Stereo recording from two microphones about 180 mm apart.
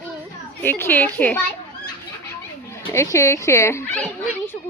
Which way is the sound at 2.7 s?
15° left (ahead or behind).